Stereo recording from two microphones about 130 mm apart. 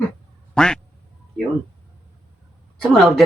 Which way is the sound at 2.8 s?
Centre (ahead or behind).